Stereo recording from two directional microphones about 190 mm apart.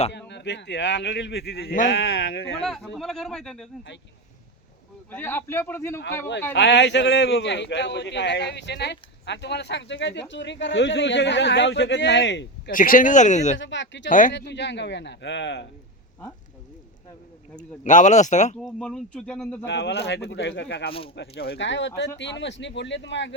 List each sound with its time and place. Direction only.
0.1 s a man's voice: 65° left (ahead or behind); by 1.9 s 50° left (ahead or behind)
1.9 s speech: 65° left (ahead or behind)
2.6 s speech: centre (ahead or behind)
5.1 s speech: 10° left (ahead or behind)
6.5 s a man's voice: 65° left (ahead or behind)
12.7 s speech: 45° left (ahead or behind)
13.6 s a man's voice: 70° left (ahead or behind)
14.1 s speech: 45° left (ahead or behind)
14.3 s a man's voice: 65° left (ahead or behind)
17.6 s speech: 40° left (ahead or behind)
18.6 s speech: 5° left (ahead or behind)
19.6 s a man's voice: 65° left (ahead or behind)